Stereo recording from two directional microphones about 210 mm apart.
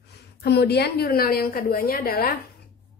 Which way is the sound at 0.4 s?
50° left (ahead or behind).